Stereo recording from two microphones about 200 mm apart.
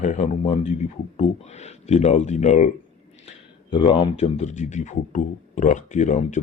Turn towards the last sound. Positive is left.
turn(degrees=40)  # may be behind; listen again after turning